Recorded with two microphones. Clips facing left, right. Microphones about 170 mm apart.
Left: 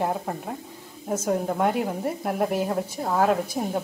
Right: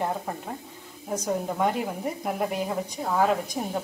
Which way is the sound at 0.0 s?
5° left (ahead or behind).